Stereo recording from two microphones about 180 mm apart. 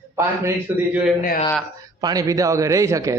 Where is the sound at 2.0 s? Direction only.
20° right (ahead or behind).